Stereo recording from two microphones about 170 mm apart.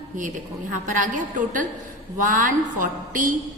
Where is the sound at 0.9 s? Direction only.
50° right (ahead or behind).